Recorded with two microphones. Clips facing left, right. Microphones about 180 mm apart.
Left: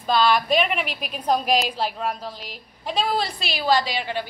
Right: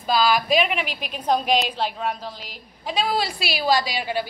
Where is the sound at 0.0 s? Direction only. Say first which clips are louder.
Left 1 dB; 5° right (ahead or behind).